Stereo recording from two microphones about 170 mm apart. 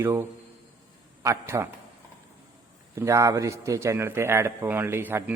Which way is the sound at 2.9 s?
15° right (ahead or behind).